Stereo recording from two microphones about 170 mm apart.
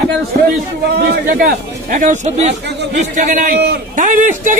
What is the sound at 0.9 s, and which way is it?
Speech, 65° right (ahead or behind).